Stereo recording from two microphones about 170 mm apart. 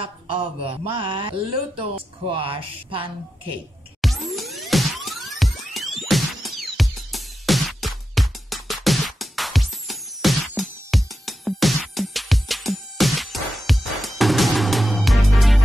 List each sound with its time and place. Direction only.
0.0 s speech: 30° right (ahead or behind)
4.0 s music: centre (ahead or behind)